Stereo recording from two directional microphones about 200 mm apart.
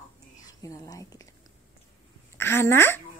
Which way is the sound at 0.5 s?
15° left (ahead or behind).